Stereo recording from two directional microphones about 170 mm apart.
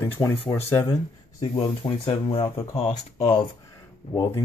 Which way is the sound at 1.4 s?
30° left (ahead or behind).